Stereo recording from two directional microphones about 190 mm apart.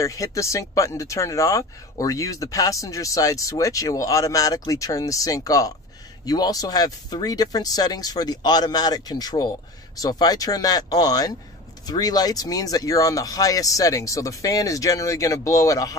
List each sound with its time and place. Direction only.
0.0 s speech: 15° left (ahead or behind)